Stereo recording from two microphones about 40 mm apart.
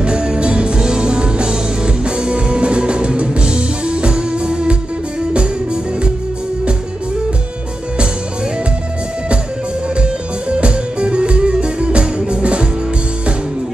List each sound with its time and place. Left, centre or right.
0.0 s music: right
10.5 s music: right